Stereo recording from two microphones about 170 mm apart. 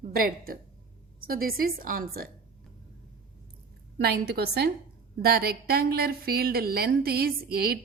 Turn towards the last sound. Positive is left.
turn(degrees=-65)  # may be behind; listen again after turning